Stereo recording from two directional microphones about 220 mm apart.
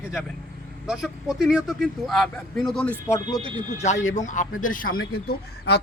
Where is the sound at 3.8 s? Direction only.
30° left (ahead or behind).